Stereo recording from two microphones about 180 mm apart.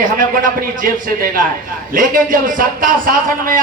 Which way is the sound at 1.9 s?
50° right (ahead or behind).